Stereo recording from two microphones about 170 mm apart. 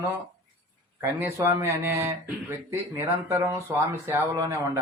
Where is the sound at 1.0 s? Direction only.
15° right (ahead or behind).